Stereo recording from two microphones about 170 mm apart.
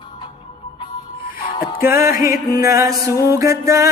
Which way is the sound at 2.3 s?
20° right (ahead or behind).